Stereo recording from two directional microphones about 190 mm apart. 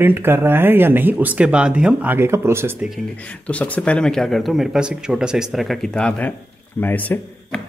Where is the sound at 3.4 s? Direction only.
5° left (ahead or behind).